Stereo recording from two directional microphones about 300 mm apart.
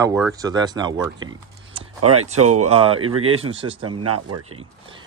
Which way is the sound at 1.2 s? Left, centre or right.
Right.